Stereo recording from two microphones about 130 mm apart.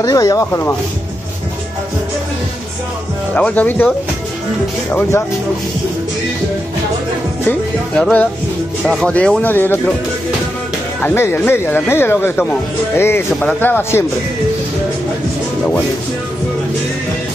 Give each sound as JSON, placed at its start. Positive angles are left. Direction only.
{"t": 0.0, "sound": "speech", "side_deg": 25}
{"t": 3.3, "sound": "speech", "side_deg": 10}
{"t": 8.0, "sound": "speech", "side_deg": 10}
{"t": 8.8, "sound": "speech", "side_deg": 0}
{"t": 11.0, "sound": "speech", "side_deg": 15}